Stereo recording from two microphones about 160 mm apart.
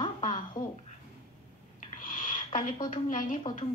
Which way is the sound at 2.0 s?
55° left (ahead or behind).